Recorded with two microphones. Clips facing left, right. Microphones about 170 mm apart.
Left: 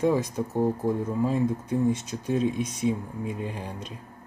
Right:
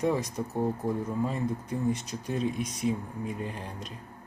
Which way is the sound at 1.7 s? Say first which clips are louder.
Left 5 dB; 25° left (ahead or behind).